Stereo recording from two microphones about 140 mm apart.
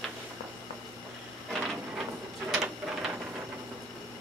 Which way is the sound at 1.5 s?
5° right (ahead or behind).